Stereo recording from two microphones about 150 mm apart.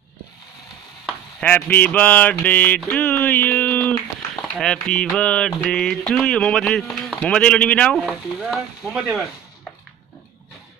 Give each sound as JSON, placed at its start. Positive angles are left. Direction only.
{"t": 1.4, "sound": "a sound", "side_deg": 10}
{"t": 4.6, "sound": "mantra", "side_deg": 5}
{"t": 8.0, "sound": "mantra", "side_deg": -5}